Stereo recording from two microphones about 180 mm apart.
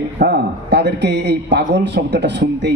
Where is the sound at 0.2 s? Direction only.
70° right (ahead or behind).